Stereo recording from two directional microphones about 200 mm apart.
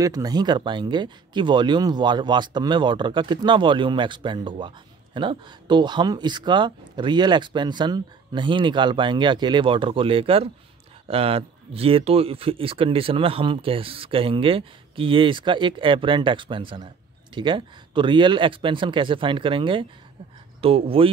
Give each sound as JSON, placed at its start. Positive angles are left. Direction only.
{"t": 0.0, "sound": "speech", "side_deg": -20}